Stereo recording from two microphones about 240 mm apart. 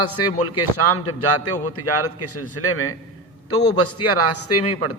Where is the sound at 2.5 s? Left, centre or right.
Left.